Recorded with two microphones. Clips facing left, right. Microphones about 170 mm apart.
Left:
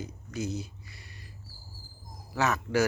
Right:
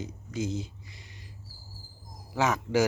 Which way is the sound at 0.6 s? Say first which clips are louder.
Right 2 dB; 20° right (ahead or behind).